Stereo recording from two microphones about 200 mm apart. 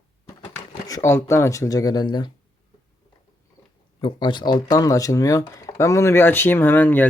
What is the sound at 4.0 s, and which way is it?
Speech, 25° left (ahead or behind).